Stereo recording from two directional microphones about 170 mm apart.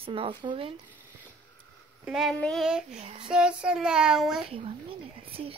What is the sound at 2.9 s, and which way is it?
Speech, 40° right (ahead or behind).